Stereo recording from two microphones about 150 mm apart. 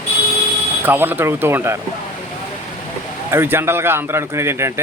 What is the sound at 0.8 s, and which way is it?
Speech, 10° right (ahead or behind).